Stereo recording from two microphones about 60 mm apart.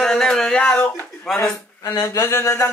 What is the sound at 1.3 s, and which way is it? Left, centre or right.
Speech, centre.